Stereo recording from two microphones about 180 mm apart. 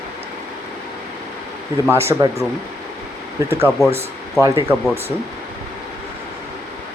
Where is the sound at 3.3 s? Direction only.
15° right (ahead or behind).